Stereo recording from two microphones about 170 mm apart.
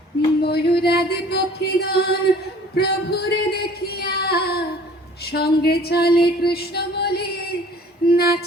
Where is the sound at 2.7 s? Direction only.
70° left (ahead or behind).